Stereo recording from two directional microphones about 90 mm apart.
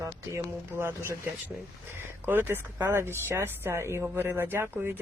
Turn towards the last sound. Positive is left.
turn(degrees=-25)  # may be behind; listen again after turning